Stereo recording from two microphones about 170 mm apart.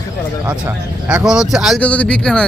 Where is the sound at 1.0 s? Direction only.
5° right (ahead or behind).